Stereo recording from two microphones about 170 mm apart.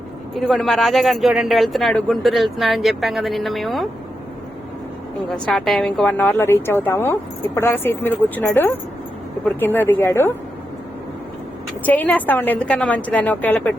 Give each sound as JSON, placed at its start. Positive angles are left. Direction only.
{"t": 0.3, "sound": "speech", "side_deg": 0}
{"t": 5.5, "sound": "a woman's voice", "side_deg": 0}
{"t": 11.9, "sound": "a woman's voice", "side_deg": 10}